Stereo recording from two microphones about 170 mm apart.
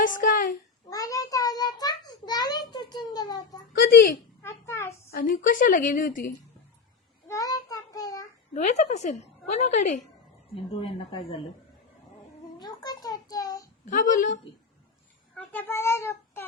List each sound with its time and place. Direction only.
0.0 s a child's voice: 50° left (ahead or behind)
0.9 s child singing: 20° left (ahead or behind)
2.7 s a sound: 25° left (ahead or behind)
3.8 s speech: 60° left (ahead or behind)
4.4 s a sound: 15° left (ahead or behind)
5.1 s a woman's voice: 55° left (ahead or behind)
7.3 s child singing: 20° left (ahead or behind)
8.5 s a woman's voice: 40° left (ahead or behind)
10.7 s speech: 35° left (ahead or behind)
12.5 s a child's voice: 25° left (ahead or behind)
13.8 s a woman's voice: 50° left (ahead or behind)
15.5 s speech: 15° left (ahead or behind)